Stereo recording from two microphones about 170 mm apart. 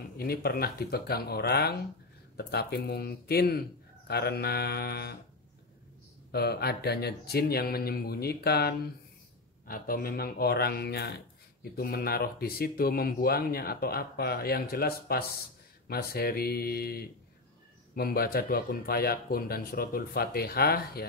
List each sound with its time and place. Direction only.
0.2 s speech: 65° left (ahead or behind)
6.3 s speech: 70° left (ahead or behind)
9.7 s speech: 60° left (ahead or behind)